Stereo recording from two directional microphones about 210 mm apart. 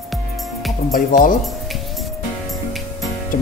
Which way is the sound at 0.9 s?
40° left (ahead or behind).